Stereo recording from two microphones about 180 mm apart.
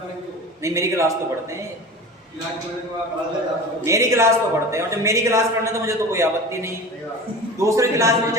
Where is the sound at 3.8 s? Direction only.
15° right (ahead or behind).